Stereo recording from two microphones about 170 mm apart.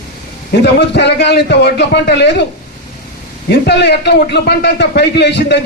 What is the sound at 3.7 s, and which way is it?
Speech, 75° left (ahead or behind).